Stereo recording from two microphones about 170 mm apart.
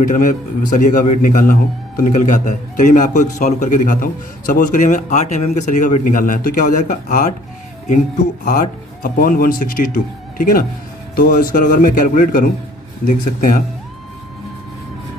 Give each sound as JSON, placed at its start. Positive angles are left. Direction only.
{"t": 0.0, "sound": "speech", "side_deg": 50}
{"t": 8.5, "sound": "speech", "side_deg": 50}